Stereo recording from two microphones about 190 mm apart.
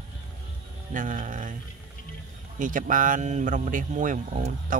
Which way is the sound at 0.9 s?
45° right (ahead or behind).